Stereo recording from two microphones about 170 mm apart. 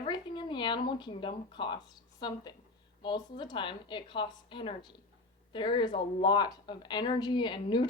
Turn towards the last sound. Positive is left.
turn(degrees=30)  # may be behind; listen again after turning